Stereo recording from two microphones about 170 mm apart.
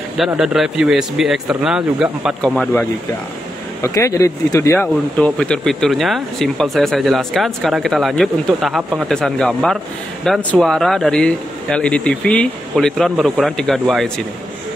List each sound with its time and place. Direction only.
0.2 s speech: centre (ahead or behind)
2.5 s speech: 10° left (ahead or behind)
3.8 s speech: 20° left (ahead or behind)
4.8 s speech: 5° left (ahead or behind)